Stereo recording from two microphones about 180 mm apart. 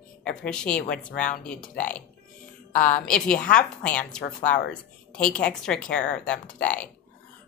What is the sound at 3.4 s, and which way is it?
Speech, 50° left (ahead or behind).